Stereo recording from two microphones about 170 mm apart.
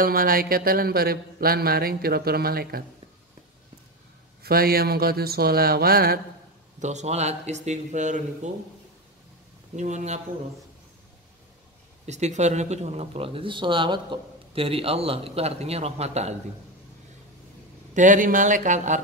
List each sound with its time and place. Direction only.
0.0 s speech: 60° right (ahead or behind)
4.4 s speech: 60° right (ahead or behind)
6.8 s speech: 45° right (ahead or behind)
9.8 s speech: 45° right (ahead or behind)
12.1 s speech: 40° right (ahead or behind)
17.9 s speech: 50° right (ahead or behind)